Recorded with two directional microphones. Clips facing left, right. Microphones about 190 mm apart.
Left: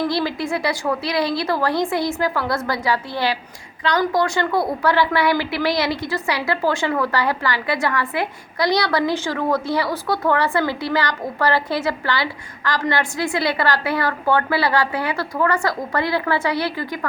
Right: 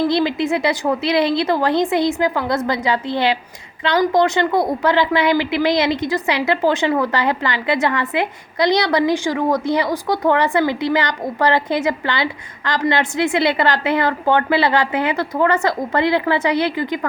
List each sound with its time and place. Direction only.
0.1 s a woman's voice: 20° right (ahead or behind)